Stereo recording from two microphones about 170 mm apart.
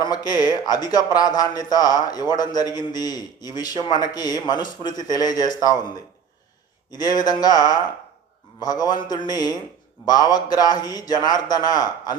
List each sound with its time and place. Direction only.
0.0 s a man's voice: 25° left (ahead or behind)